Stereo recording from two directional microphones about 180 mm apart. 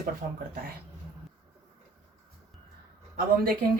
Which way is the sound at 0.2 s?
45° right (ahead or behind).